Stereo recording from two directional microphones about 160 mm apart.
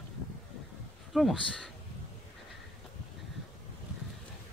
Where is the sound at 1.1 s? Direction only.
Centre (ahead or behind).